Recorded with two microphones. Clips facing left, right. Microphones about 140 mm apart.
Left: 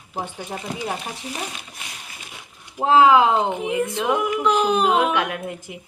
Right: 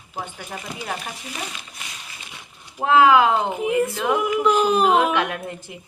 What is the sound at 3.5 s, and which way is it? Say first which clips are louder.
Speech: right 2 dB; 5° right (ahead or behind).